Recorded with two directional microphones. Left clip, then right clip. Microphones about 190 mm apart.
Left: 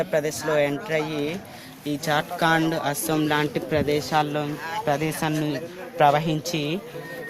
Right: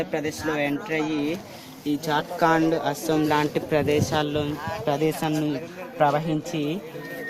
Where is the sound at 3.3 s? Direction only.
15° left (ahead or behind).